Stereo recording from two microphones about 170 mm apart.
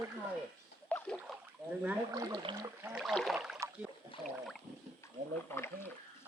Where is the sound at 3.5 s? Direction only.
15° right (ahead or behind).